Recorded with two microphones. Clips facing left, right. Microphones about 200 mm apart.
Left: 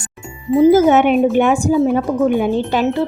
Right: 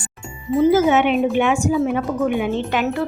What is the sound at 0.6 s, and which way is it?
A woman's voice, 40° left (ahead or behind).